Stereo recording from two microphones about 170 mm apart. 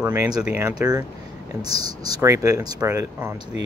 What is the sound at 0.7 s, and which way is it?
Speech, 20° right (ahead or behind).